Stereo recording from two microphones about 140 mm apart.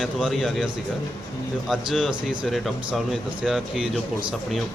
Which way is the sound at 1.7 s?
Centre (ahead or behind).